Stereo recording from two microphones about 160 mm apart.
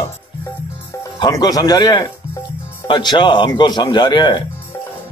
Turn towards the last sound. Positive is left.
turn(degrees=30)  # may be behind; listen again after turning